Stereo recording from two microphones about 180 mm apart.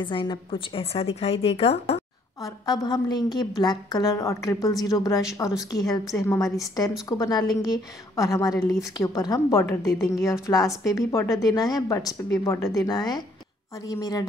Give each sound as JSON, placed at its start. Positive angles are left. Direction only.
{"t": 0.0, "sound": "speech", "side_deg": 25}
{"t": 2.4, "sound": "a woman's voice", "side_deg": 20}